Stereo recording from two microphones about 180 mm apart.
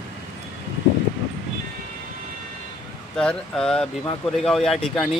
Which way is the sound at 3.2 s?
5° left (ahead or behind).